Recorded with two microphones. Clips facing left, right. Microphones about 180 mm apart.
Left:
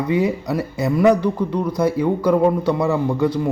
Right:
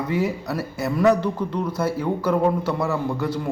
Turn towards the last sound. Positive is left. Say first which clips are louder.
# left 6 dB
turn(degrees=15)  # may be behind; listen again after turning